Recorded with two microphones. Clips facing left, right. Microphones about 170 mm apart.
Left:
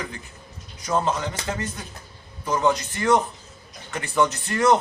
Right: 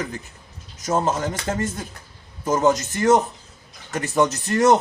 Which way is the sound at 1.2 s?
45° right (ahead or behind).